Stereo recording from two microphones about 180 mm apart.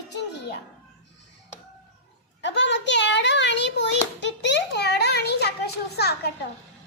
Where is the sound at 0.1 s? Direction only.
70° left (ahead or behind).